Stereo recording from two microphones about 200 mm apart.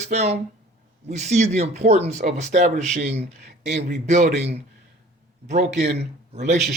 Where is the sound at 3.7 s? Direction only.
55° right (ahead or behind).